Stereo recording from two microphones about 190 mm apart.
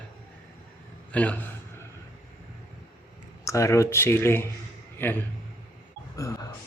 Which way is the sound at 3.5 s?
15° left (ahead or behind).